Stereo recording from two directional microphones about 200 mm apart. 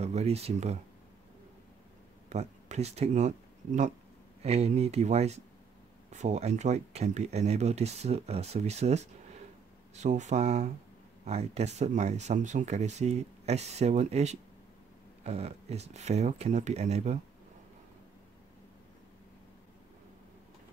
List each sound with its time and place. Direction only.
0.0 s speech: 30° right (ahead or behind)
2.2 s speech: 35° right (ahead or behind)